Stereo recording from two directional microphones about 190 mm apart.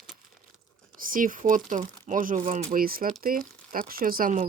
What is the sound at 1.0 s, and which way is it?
Speech, 45° right (ahead or behind).